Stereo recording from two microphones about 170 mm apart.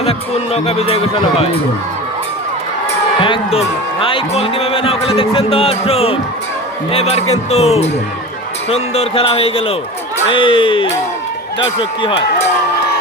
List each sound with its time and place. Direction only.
0.0 s a man's voice: 35° left (ahead or behind)
3.2 s a man's voice: 30° left (ahead or behind)